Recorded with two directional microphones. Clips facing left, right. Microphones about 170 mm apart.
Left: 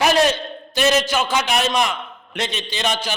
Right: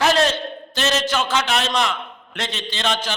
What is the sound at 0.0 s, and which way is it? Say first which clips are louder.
A man's voice: left 1 dB; 15° left (ahead or behind).